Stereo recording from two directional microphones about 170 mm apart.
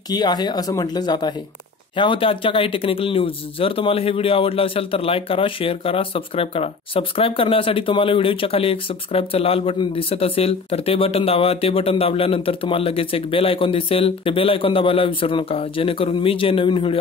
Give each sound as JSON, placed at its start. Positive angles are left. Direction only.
{"t": 0.1, "sound": "speech", "side_deg": 25}